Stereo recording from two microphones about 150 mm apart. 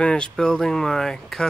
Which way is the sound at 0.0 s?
5° left (ahead or behind).